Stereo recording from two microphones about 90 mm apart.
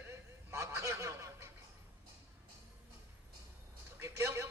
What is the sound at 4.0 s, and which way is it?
Speech, 30° right (ahead or behind).